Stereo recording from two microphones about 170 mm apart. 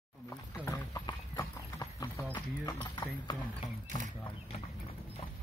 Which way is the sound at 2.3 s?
25° left (ahead or behind).